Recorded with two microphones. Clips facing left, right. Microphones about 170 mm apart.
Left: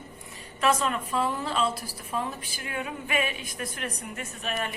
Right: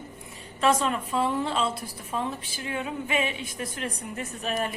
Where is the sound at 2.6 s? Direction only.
25° right (ahead or behind).